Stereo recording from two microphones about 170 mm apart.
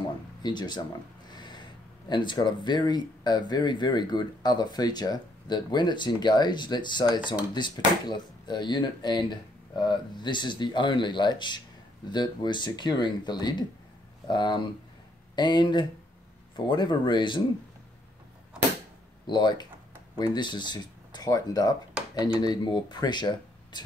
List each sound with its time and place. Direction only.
0.4 s speech: 25° left (ahead or behind)
1.3 s a sound: 25° left (ahead or behind)
2.0 s speech: 25° left (ahead or behind)
19.2 s speech: 25° left (ahead or behind)